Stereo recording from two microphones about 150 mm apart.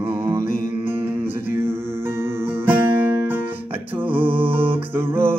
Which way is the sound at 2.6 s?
15° right (ahead or behind).